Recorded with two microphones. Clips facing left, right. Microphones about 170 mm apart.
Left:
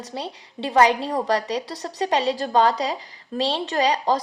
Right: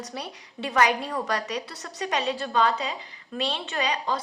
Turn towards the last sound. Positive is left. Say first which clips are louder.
# left 7 dB
turn(degrees=35)  # may be behind; listen again after turning